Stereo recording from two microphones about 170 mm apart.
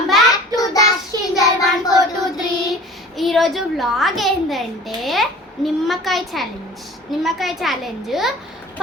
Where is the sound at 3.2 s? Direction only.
Centre (ahead or behind).